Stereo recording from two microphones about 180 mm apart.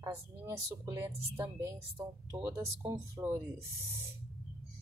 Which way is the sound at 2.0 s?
25° right (ahead or behind).